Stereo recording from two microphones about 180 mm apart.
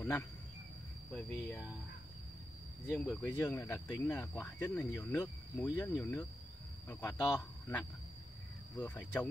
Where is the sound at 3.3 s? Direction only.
15° left (ahead or behind).